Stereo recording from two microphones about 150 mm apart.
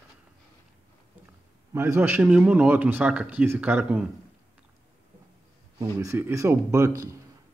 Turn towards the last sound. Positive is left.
turn(degrees=-20)  # may be behind; listen again after turning